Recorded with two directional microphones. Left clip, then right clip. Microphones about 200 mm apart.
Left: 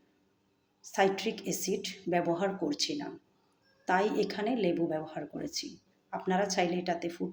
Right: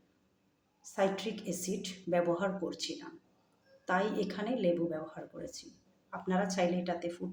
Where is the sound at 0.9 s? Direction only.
10° left (ahead or behind).